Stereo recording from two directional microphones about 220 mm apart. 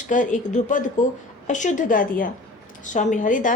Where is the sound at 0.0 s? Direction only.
35° left (ahead or behind).